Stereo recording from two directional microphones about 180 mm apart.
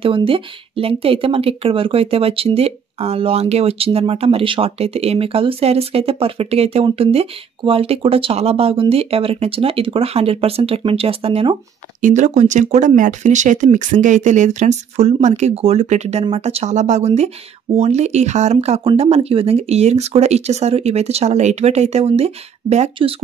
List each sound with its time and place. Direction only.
0.0 s speech: 30° right (ahead or behind)